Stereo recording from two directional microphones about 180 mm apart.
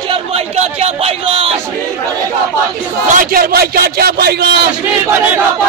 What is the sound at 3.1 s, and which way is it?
A man's voice, 50° right (ahead or behind).